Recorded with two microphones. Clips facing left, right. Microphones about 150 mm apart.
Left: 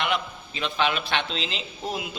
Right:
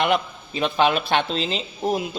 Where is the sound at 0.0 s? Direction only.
45° right (ahead or behind).